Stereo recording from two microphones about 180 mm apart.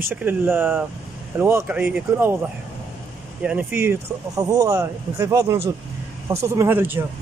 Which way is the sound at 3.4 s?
10° right (ahead or behind).